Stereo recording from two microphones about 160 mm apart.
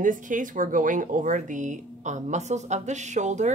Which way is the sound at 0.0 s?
55° right (ahead or behind).